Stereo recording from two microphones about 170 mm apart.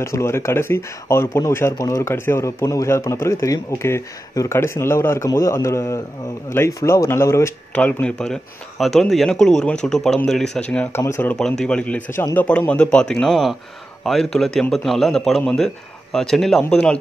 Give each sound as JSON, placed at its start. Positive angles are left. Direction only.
{"t": 0.0, "sound": "speech", "side_deg": 15}
{"t": 11.3, "sound": "a man's voice", "side_deg": 5}